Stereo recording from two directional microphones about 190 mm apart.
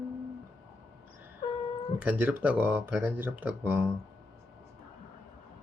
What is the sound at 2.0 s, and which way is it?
Speech, 5° right (ahead or behind).